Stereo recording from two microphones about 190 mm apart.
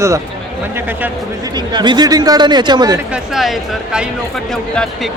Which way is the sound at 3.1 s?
Centre (ahead or behind).